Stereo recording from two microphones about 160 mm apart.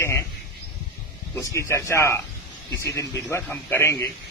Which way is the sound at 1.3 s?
20° left (ahead or behind).